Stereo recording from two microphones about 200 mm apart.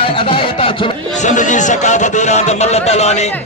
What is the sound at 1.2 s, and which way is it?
A man's voice, 40° left (ahead or behind).